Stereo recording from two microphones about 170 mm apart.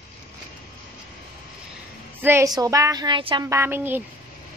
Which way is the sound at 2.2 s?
15° right (ahead or behind).